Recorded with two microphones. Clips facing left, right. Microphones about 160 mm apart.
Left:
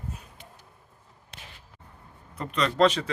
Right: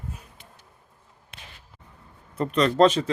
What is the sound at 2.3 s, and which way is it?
Speech, 45° right (ahead or behind).